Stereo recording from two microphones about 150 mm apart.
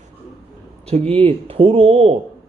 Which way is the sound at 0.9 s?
45° right (ahead or behind).